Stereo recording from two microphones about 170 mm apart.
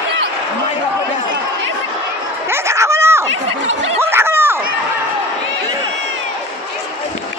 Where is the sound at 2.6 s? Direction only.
15° right (ahead or behind).